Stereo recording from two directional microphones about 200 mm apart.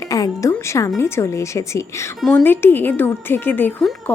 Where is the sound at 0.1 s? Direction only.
15° left (ahead or behind).